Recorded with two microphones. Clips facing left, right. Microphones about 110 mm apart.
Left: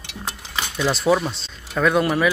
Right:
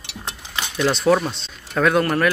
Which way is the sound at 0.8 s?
5° left (ahead or behind).